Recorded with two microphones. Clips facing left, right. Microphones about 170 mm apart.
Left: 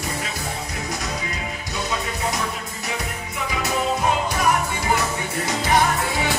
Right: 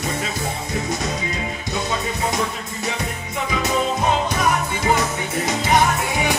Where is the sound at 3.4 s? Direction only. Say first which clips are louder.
Right 2 dB; 20° right (ahead or behind).